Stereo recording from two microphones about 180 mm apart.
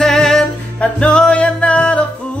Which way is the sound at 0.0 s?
5° left (ahead or behind).